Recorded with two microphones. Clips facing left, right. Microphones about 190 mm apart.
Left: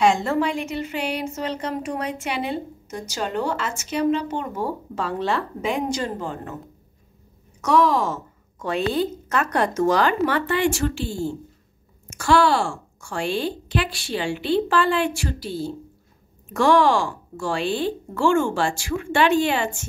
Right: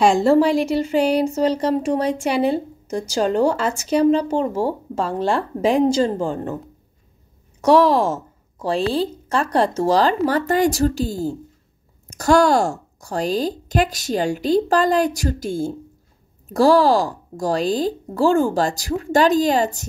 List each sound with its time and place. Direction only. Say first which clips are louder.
0.1 s speech: right 8 dB; 35° right (ahead or behind)
4.9 s speech: right 3 dB; 45° right (ahead or behind)
7.6 s speech: right 5 dB; 30° right (ahead or behind)
16.4 s speech: right 3 dB; 35° right (ahead or behind)